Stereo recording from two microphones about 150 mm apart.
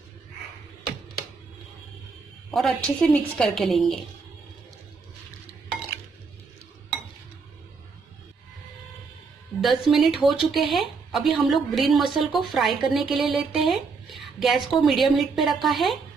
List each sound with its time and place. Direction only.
2.5 s speech: 5° left (ahead or behind)
9.6 s speech: centre (ahead or behind)